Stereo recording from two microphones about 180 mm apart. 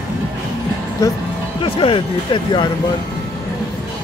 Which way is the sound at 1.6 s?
30° left (ahead or behind).